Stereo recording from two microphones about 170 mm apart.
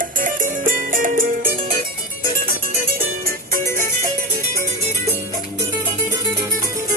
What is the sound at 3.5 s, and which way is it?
Music, 15° left (ahead or behind).